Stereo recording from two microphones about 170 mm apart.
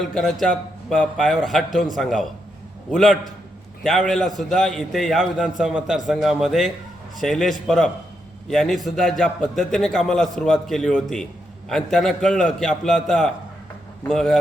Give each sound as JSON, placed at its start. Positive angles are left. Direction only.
{"t": 0.0, "sound": "a man's voice", "side_deg": 0}